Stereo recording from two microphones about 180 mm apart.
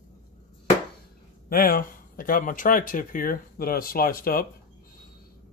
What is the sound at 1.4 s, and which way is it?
Speech, 55° left (ahead or behind).